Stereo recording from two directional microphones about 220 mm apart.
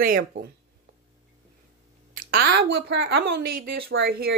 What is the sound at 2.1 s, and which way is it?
A woman's voice, 40° right (ahead or behind).